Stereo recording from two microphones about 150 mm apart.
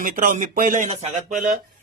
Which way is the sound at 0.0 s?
60° right (ahead or behind).